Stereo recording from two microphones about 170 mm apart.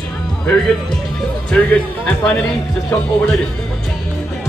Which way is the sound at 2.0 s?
5° left (ahead or behind).